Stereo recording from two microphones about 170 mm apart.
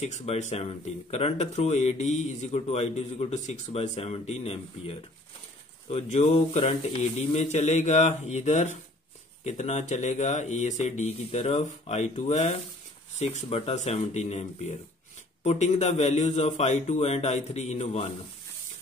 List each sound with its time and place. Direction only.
0.0 s speech: 40° left (ahead or behind)